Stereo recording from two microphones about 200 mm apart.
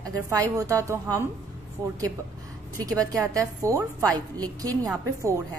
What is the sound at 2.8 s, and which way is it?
A woman's voice, 15° right (ahead or behind).